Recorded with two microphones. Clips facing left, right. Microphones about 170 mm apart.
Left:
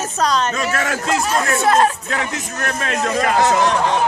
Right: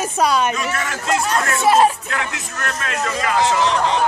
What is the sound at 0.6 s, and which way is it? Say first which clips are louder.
Speech: left 3 dB; 45° left (ahead or behind).